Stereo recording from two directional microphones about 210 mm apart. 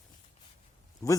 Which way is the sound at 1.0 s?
15° left (ahead or behind).